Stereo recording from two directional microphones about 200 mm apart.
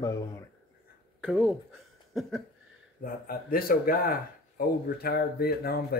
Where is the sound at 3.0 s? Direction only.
45° left (ahead or behind).